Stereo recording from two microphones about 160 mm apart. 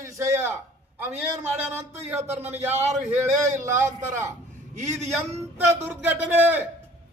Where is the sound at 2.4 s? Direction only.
10° right (ahead or behind).